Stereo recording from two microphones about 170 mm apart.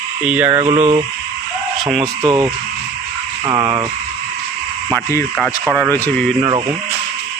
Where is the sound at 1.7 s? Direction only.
Centre (ahead or behind).